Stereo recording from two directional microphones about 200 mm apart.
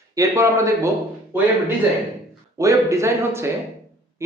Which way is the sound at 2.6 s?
15° right (ahead or behind).